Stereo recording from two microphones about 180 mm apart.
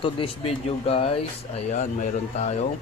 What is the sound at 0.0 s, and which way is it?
Speech, 30° left (ahead or behind).